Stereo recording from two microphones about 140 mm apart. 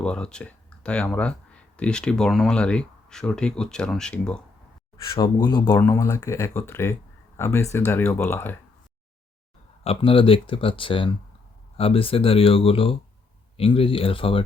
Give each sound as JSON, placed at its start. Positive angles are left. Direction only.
{"t": 0.0, "sound": "speech", "side_deg": 5}
{"t": 5.0, "sound": "speech", "side_deg": 35}
{"t": 9.8, "sound": "speech", "side_deg": 40}